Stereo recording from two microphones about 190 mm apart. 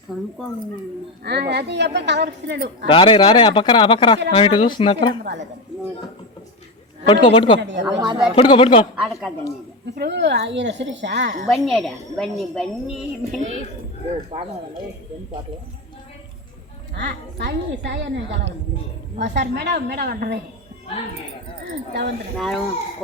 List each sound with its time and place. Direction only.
0.1 s a woman's voice: 5° right (ahead or behind)
1.2 s a woman's voice: 60° right (ahead or behind)
2.8 s speech: 25° left (ahead or behind)
5.2 s a woman's voice: 65° right (ahead or behind)
7.1 s speech: 30° left (ahead or behind)
7.6 s a woman's voice: 70° right (ahead or behind)
7.9 s speech: 20° right (ahead or behind)
8.4 s speech: 30° left (ahead or behind)
9.0 s a woman's voice: centre (ahead or behind)
9.8 s a woman's voice: 60° right (ahead or behind)
11.5 s a woman's voice: centre (ahead or behind)
17.0 s a woman's voice: 60° right (ahead or behind)
19.3 s a woman's voice: 60° right (ahead or behind)
22.4 s a woman's voice: centre (ahead or behind)